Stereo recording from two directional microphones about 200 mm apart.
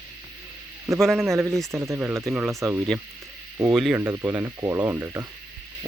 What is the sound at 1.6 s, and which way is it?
Speech, 15° right (ahead or behind).